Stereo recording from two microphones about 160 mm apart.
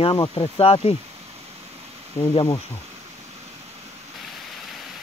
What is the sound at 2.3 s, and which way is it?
Speech, 30° left (ahead or behind).